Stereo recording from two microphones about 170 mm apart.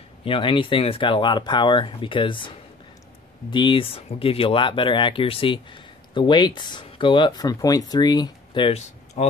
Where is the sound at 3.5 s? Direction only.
30° left (ahead or behind).